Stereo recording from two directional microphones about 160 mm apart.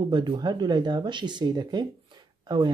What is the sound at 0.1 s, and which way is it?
Speech, 25° right (ahead or behind).